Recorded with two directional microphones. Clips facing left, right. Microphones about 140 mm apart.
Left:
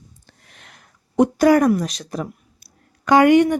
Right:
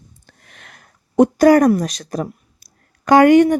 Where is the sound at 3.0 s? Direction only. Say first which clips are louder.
Right 3 dB; 45° right (ahead or behind).